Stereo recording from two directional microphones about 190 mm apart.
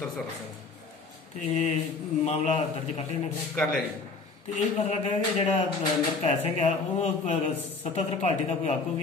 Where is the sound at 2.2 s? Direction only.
35° left (ahead or behind).